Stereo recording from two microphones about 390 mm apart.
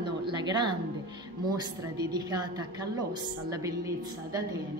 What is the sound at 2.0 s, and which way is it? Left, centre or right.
A woman's voice, centre.